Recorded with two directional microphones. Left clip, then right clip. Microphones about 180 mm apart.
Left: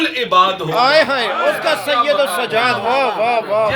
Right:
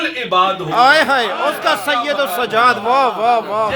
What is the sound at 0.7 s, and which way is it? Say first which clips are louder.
Speech: right 2 dB; 30° right (ahead or behind).